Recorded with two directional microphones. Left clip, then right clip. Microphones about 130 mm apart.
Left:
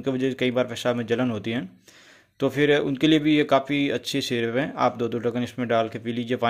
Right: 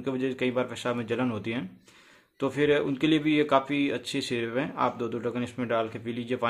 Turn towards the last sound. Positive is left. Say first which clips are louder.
# left 4 dB
turn(degrees=35)  # may be behind; listen again after turning